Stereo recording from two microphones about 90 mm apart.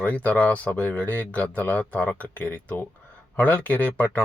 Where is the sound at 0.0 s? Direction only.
15° left (ahead or behind).